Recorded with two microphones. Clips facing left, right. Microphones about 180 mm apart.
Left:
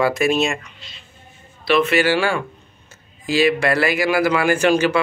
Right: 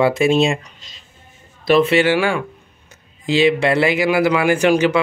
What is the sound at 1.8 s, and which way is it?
Speech, 20° right (ahead or behind).